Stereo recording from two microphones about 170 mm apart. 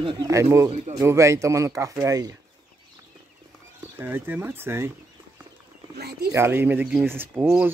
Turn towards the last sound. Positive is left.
turn(degrees=-10)  # may be behind; listen again after turning